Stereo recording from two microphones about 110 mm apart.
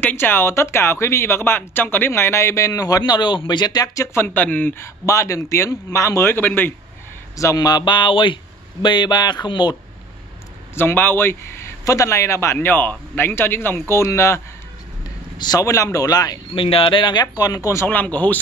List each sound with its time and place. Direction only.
0.0 s speech: 20° left (ahead or behind)
7.3 s speech: 35° left (ahead or behind)
10.7 s speech: 20° left (ahead or behind)
15.3 s speech: 40° left (ahead or behind)
15.6 s speech: 30° left (ahead or behind)
16.5 s speech: 55° left (ahead or behind); by 17.8 s 30° left (ahead or behind)
17.8 s speech: 15° left (ahead or behind)